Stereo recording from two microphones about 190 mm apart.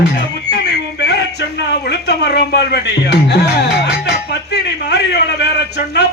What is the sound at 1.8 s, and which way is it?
Speech, 60° left (ahead or behind).